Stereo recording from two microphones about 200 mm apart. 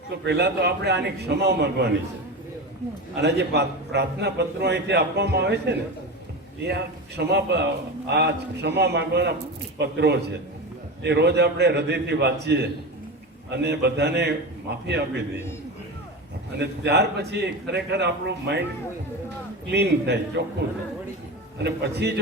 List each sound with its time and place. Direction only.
0.3 s a man's voice: 55° right (ahead or behind)
3.2 s a man's voice: 55° right (ahead or behind)
16.6 s a man's voice: 55° right (ahead or behind)
19.6 s a man's voice: 55° right (ahead or behind)
21.6 s a man's voice: 55° right (ahead or behind)